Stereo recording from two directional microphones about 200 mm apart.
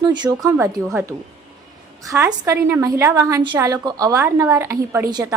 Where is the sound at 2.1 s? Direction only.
10° right (ahead or behind).